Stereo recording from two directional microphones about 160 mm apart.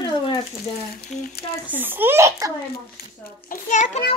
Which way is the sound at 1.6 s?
10° right (ahead or behind).